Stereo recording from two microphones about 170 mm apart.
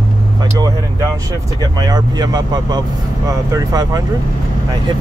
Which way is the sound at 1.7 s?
25° right (ahead or behind).